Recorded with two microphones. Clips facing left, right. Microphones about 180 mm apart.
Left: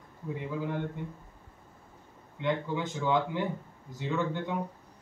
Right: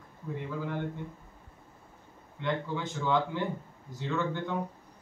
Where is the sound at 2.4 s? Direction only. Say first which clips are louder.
Left 2 dB; 15° left (ahead or behind).